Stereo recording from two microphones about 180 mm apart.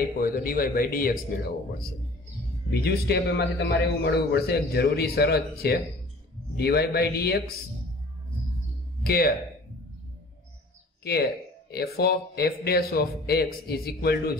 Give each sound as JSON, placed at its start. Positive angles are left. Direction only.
{"t": 0.2, "sound": "speech", "side_deg": 50}
{"t": 2.7, "sound": "speech", "side_deg": 65}
{"t": 9.0, "sound": "speech", "side_deg": 60}
{"t": 11.7, "sound": "speech", "side_deg": 60}